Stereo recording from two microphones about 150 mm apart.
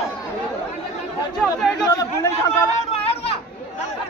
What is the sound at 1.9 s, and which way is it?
Speech, 20° left (ahead or behind).